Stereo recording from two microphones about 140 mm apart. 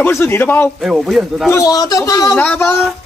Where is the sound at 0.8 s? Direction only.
5° right (ahead or behind).